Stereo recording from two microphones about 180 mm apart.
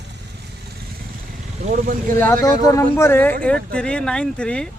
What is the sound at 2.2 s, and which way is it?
Speech, 15° left (ahead or behind).